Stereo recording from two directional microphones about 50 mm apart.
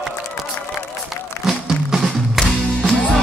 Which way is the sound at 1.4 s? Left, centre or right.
Centre.